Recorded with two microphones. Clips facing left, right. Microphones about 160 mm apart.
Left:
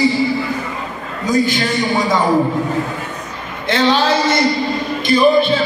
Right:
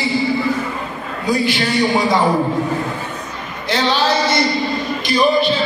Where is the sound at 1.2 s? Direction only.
45° left (ahead or behind).